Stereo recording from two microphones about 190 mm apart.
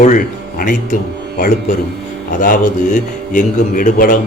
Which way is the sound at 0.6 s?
45° left (ahead or behind).